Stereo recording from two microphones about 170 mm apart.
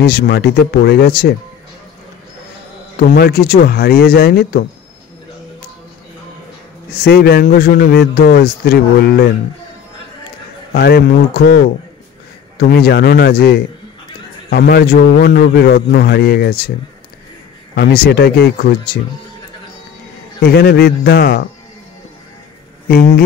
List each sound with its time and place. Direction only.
0.0 s a man's voice: 70° left (ahead or behind)
3.0 s a man's voice: 70° left (ahead or behind)
7.1 s a man's voice: 65° left (ahead or behind)
10.7 s a man's voice: 65° left (ahead or behind)
17.7 s a man's voice: 70° left (ahead or behind)
20.4 s a man's voice: 70° left (ahead or behind)
22.8 s a man's voice: 70° left (ahead or behind)